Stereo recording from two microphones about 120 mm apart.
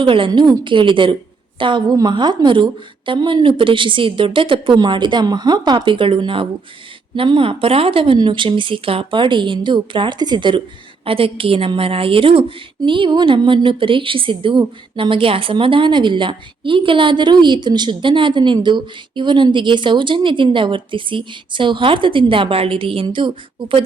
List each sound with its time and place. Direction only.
0.0 s a woman's voice: 45° right (ahead or behind)
11.0 s a woman's voice: 50° right (ahead or behind)